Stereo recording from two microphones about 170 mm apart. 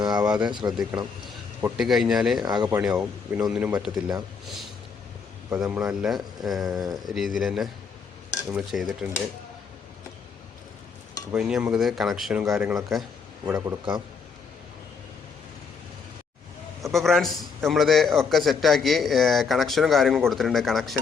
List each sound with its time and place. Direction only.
0.0 s a man's voice: 25° right (ahead or behind)
1.8 s a man's voice: centre (ahead or behind)
2.4 s a man's voice: 25° right (ahead or behind)
2.7 s a man's voice: 5° right (ahead or behind)
5.6 s a man's voice: 10° right (ahead or behind)
11.3 s a man's voice: 5° right (ahead or behind)
13.4 s a man's voice: 20° right (ahead or behind)
16.8 s a man's voice: centre (ahead or behind)